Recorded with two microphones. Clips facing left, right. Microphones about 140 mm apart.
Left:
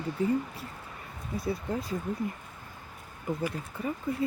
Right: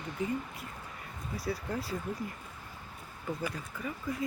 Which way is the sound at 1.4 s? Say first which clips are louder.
Left 3 dB; 20° left (ahead or behind).